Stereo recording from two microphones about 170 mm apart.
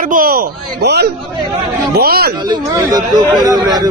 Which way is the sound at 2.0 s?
65° right (ahead or behind).